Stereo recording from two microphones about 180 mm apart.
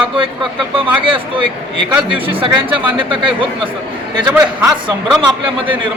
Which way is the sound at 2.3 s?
30° right (ahead or behind).